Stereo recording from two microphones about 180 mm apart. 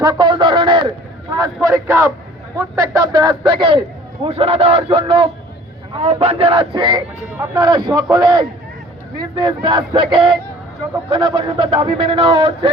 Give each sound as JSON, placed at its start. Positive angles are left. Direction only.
{"t": 0.0, "sound": "a man's voice", "side_deg": -25}